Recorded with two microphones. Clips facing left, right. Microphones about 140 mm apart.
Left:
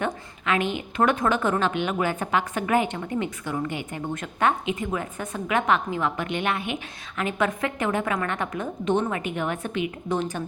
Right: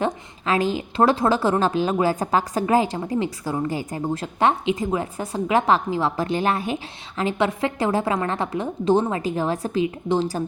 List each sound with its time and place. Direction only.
0.0 s a woman's voice: 35° right (ahead or behind)